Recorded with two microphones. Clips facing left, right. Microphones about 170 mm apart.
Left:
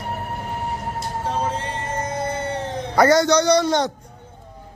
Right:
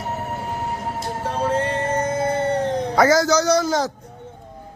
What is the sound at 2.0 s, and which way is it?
Howl, 50° right (ahead or behind).